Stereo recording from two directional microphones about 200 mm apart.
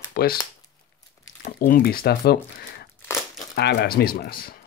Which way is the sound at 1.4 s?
45° left (ahead or behind).